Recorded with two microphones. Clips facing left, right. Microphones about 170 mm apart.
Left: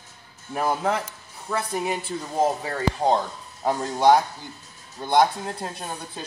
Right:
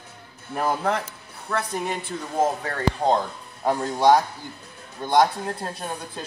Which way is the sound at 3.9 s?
Centre (ahead or behind).